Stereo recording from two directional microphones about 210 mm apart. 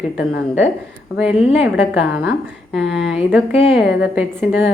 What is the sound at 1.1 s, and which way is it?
A woman's voice, 5° right (ahead or behind).